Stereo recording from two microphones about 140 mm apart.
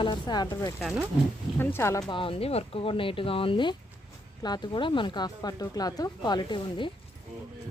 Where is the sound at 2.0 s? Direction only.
40° left (ahead or behind).